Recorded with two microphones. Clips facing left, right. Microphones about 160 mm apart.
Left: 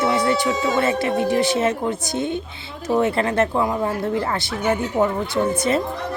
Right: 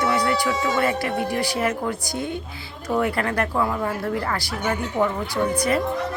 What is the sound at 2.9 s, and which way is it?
Speech, 25° left (ahead or behind).